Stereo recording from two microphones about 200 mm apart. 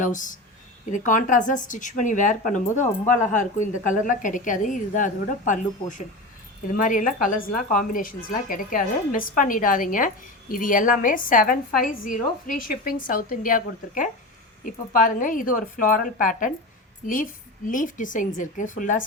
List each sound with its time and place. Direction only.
0.0 s a woman's voice: 40° left (ahead or behind)
17.7 s a woman's voice: 40° left (ahead or behind)